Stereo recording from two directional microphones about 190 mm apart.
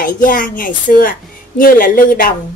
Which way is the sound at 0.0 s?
45° left (ahead or behind).